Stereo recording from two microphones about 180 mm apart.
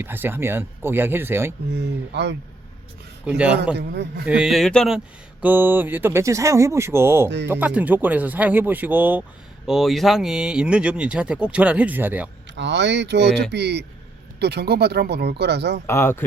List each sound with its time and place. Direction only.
0.0 s speech: 10° right (ahead or behind)
1.7 s speech: 70° right (ahead or behind)
3.2 s speech: 5° right (ahead or behind)
3.8 s speech: 70° right (ahead or behind)
4.3 s speech: centre (ahead or behind)
12.5 s speech: 75° right (ahead or behind)
15.9 s speech: 15° left (ahead or behind)